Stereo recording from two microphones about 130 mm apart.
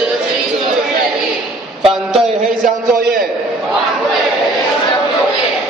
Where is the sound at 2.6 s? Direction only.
90° right.